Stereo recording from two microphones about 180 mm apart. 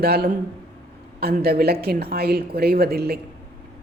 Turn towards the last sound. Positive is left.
turn(degrees=-60)  # may be behind; listen again after turning